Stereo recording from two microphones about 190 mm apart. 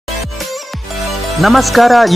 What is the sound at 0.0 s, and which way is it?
Music, centre (ahead or behind).